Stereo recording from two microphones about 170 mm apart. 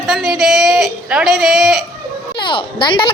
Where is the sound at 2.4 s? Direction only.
30° left (ahead or behind).